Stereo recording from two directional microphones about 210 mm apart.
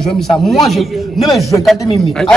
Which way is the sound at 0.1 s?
Centre (ahead or behind).